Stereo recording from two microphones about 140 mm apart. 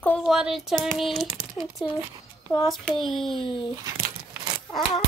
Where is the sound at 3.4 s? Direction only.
35° left (ahead or behind).